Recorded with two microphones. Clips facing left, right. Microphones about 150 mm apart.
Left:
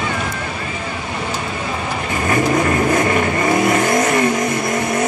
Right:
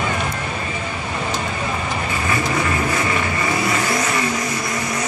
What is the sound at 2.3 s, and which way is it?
Vehicle, 45° left (ahead or behind).